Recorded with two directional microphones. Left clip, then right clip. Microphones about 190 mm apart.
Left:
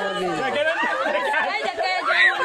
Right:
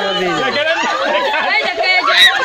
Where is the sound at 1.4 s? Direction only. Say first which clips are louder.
Right 9 dB; 60° left (ahead or behind).